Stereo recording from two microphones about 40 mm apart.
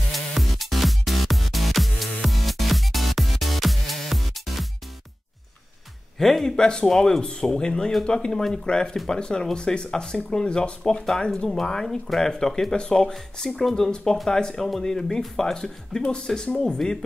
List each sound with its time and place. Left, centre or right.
0.1 s music: centre
6.1 s speech: centre
10.8 s speech: centre
12.7 s speech: left
13.0 s speech: centre
14.4 s speech: centre
16.7 s speech: centre